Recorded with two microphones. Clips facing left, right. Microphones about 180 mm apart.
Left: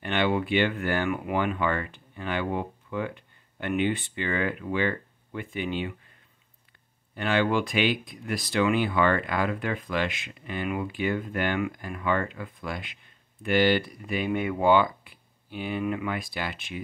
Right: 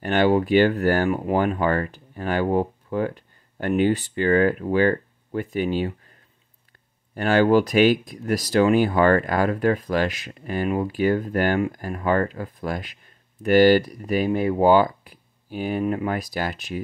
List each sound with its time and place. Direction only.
0.0 s speech: 40° right (ahead or behind)
7.2 s speech: 40° right (ahead or behind)